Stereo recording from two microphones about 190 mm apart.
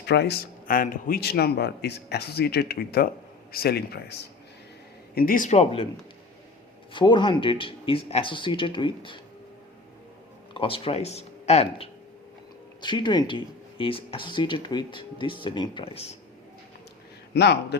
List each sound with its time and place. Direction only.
0.0 s speech: 60° left (ahead or behind); by 5.9 s 30° left (ahead or behind)
6.9 s speech: 25° left (ahead or behind)
10.5 s speech: 30° left (ahead or behind)
17.3 s speech: 60° left (ahead or behind)